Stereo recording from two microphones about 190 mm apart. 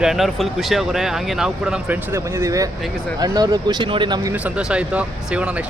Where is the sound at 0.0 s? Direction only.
Centre (ahead or behind); by 4.4 s 20° right (ahead or behind).